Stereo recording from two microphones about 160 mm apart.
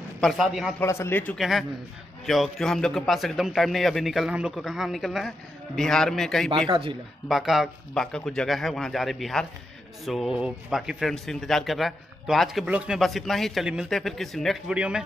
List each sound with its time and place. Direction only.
0.2 s a man's voice: centre (ahead or behind)
0.7 s a man's voice: 15° left (ahead or behind)
1.4 s a man's voice: centre (ahead or behind)
6.7 s speech: 30° right (ahead or behind)
7.2 s a man's voice: centre (ahead or behind)